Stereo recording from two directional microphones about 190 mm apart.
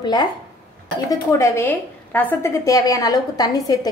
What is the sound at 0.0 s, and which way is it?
A woman's voice, 20° left (ahead or behind).